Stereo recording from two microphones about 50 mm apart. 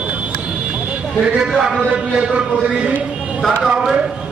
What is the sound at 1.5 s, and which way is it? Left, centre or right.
Speech, centre.